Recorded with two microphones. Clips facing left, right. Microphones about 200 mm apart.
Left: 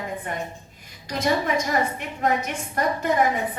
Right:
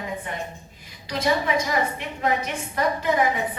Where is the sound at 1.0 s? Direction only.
45° left (ahead or behind).